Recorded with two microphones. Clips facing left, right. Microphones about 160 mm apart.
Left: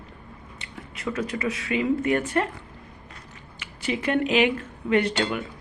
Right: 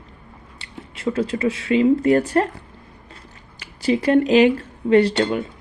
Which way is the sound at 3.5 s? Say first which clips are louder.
Right 8 dB; 35° right (ahead or behind).